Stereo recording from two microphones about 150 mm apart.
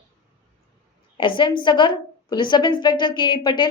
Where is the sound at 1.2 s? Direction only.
35° left (ahead or behind).